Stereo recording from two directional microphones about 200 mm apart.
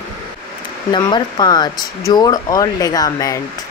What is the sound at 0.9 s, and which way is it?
Speech, 20° left (ahead or behind).